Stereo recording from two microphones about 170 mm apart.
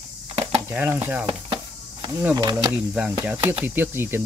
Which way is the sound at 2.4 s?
25° right (ahead or behind).